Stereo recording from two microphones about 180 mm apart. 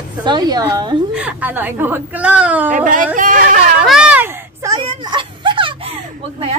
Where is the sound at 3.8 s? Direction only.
5° right (ahead or behind).